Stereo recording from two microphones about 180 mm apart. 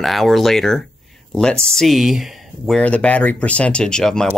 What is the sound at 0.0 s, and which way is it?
Speech, centre (ahead or behind).